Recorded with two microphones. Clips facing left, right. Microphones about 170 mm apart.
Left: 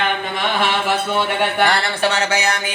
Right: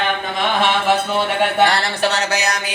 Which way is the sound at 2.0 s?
35° right (ahead or behind).